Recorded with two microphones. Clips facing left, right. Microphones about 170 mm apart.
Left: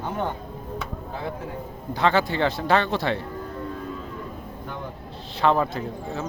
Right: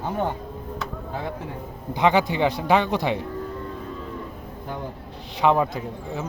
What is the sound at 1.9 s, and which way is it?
Speech, 15° right (ahead or behind).